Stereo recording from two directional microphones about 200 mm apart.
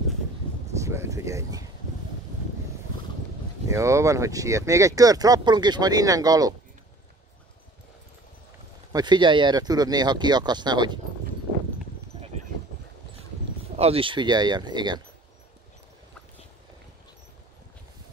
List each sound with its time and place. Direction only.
0.7 s speech: 15° right (ahead or behind)
3.6 s speech: 15° right (ahead or behind)
8.9 s speech: 20° right (ahead or behind)
13.7 s speech: 30° right (ahead or behind)